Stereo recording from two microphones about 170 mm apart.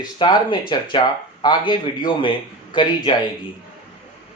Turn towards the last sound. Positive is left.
turn(degrees=25)  # may be behind; listen again after turning